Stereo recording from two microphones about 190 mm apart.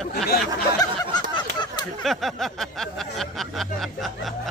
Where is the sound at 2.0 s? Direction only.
Centre (ahead or behind).